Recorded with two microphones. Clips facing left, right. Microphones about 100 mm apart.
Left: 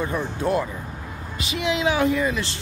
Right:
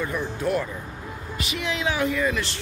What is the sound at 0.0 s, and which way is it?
Speech, 25° left (ahead or behind).